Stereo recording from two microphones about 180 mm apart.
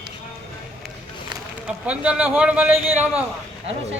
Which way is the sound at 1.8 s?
5° right (ahead or behind).